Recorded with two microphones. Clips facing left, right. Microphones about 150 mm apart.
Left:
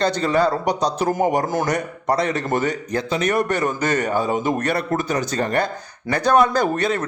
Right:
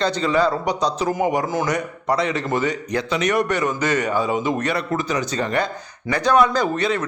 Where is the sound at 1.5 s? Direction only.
60° left (ahead or behind).